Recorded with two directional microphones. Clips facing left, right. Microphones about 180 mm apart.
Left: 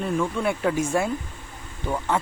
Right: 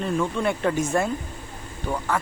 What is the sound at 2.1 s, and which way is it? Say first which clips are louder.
Speech: left 2 dB; 25° left (ahead or behind).